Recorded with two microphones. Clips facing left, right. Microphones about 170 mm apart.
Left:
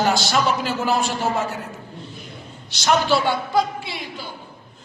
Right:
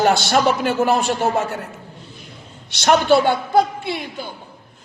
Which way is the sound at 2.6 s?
60° right (ahead or behind).